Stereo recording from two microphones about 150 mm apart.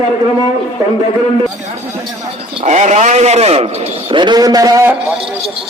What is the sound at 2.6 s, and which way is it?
Speech, 50° right (ahead or behind).